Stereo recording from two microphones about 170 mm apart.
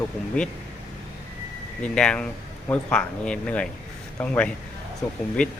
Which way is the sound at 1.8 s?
5° left (ahead or behind).